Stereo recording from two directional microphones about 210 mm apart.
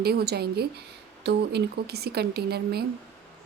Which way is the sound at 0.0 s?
50° right (ahead or behind).